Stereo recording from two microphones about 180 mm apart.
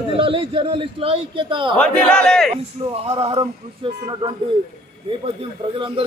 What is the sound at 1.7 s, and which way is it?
Speech, 5° left (ahead or behind).